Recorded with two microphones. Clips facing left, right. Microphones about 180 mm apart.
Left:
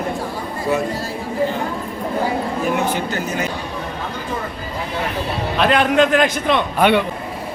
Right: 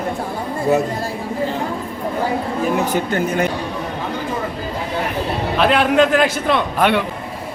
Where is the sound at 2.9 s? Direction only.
55° right (ahead or behind).